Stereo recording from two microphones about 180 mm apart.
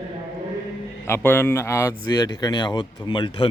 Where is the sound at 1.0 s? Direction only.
10° left (ahead or behind).